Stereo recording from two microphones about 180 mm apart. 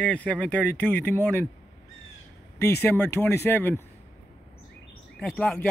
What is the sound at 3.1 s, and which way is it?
Speech, 15° left (ahead or behind).